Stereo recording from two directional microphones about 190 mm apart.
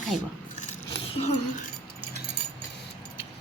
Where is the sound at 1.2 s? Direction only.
35° left (ahead or behind).